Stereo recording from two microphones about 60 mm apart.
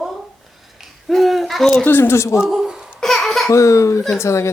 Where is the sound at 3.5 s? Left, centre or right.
Left.